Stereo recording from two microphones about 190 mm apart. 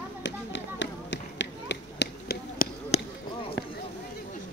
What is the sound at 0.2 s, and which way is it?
Tap, 70° left (ahead or behind).